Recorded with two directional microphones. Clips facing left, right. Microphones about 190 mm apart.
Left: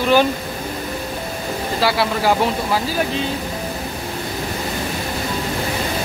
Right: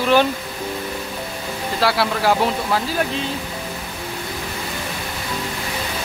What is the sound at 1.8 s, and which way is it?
A man's voice, centre (ahead or behind).